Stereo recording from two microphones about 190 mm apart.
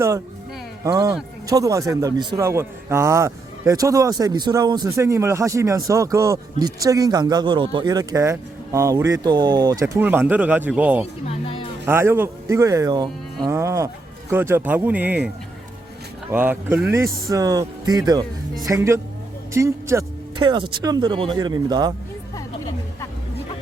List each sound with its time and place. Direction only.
0.9 s a man's voice: 20° right (ahead or behind)
11.3 s a sound: 30° left (ahead or behind)
11.9 s a man's voice: 10° right (ahead or behind)
16.3 s a man's voice: 10° right (ahead or behind)
22.4 s music: 15° left (ahead or behind)